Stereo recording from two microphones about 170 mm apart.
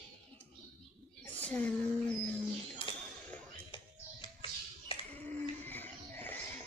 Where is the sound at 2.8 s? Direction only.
30° left (ahead or behind).